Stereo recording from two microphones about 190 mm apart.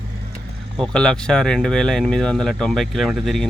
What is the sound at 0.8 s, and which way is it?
Speech, 5° left (ahead or behind).